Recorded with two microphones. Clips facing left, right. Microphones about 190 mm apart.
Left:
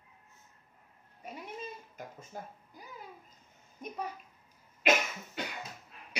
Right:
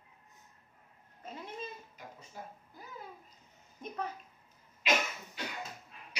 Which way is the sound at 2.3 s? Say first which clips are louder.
Left 3 dB; 50° left (ahead or behind).